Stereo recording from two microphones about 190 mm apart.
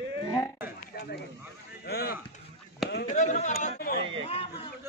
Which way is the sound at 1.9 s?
55° left (ahead or behind).